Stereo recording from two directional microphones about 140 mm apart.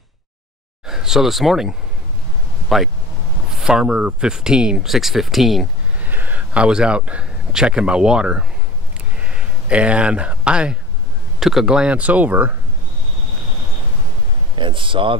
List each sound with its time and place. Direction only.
0.8 s speech: 5° right (ahead or behind)
6.0 s speech: 15° right (ahead or behind)
14.5 s speech: 35° right (ahead or behind)